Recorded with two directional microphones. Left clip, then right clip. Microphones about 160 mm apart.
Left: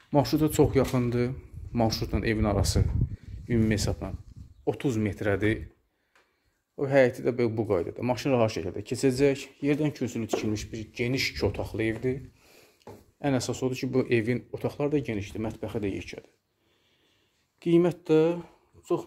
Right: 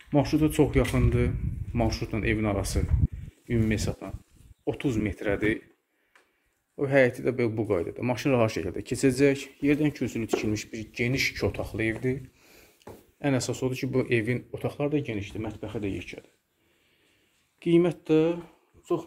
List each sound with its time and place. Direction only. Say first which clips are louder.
0.1 s speech: even; 30° left (ahead or behind)
3.4 s speech: left 1 dB; 40° left (ahead or behind)
6.8 s speech: even; 15° left (ahead or behind)
12.4 s a sound: right 1 dB; centre (ahead or behind)
12.7 s speech: right 1 dB; 15° left (ahead or behind); by 16.3 s 45° left (ahead or behind)
17.6 s speech: even; 30° left (ahead or behind)